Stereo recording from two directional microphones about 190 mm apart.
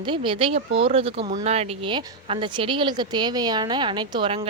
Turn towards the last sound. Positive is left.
turn(degrees=-25)  # may be behind; listen again after turning